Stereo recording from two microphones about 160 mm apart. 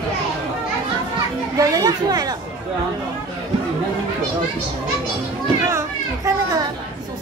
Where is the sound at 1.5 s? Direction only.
20° right (ahead or behind).